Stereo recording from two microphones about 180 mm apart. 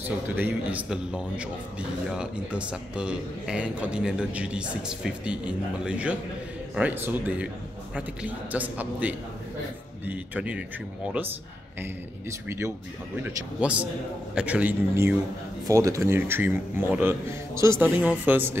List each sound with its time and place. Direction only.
0.4 s a man's voice: 10° right (ahead or behind)
11.8 s speech: 15° right (ahead or behind)